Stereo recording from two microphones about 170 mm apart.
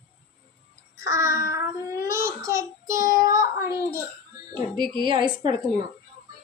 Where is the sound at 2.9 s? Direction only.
20° right (ahead or behind).